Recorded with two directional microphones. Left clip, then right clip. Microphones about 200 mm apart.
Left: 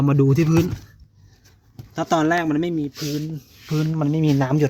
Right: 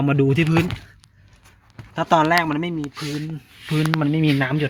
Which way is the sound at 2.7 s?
10° left (ahead or behind).